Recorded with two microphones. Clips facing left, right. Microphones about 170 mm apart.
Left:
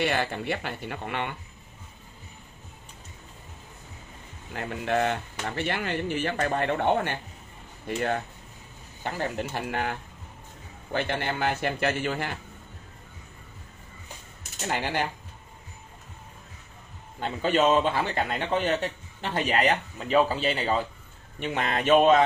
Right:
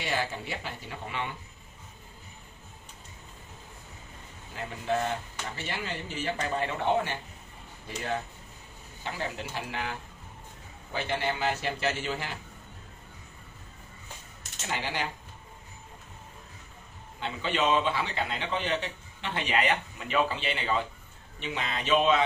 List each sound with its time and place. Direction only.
0.0 s speech: 60° left (ahead or behind)
4.6 s a man's voice: 65° left (ahead or behind)
14.7 s a man's voice: 50° left (ahead or behind)
17.2 s a man's voice: 45° left (ahead or behind)
21.4 s a man's voice: 50° left (ahead or behind)